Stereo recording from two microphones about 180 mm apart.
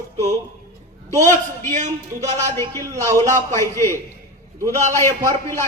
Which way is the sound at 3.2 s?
15° left (ahead or behind).